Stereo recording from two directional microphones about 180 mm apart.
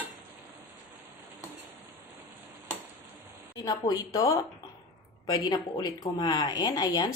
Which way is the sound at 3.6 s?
20° left (ahead or behind).